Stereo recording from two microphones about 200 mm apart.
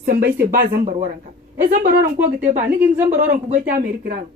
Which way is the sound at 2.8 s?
10° right (ahead or behind).